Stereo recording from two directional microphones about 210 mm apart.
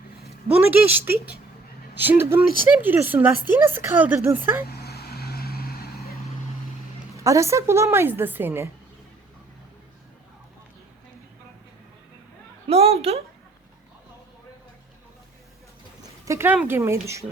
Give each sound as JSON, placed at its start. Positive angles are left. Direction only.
{"t": 0.7, "sound": "a woman's voice", "side_deg": -10}
{"t": 4.7, "sound": "vehicle", "side_deg": 50}
{"t": 7.3, "sound": "a woman's voice", "side_deg": -15}
{"t": 12.6, "sound": "a sound", "side_deg": -30}
{"t": 16.2, "sound": "a sound", "side_deg": -15}
{"t": 16.6, "sound": "a woman's voice", "side_deg": -10}